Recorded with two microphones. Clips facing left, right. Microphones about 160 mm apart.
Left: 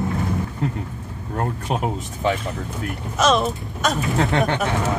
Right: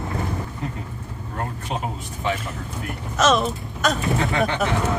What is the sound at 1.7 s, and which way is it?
Speech, 55° left (ahead or behind).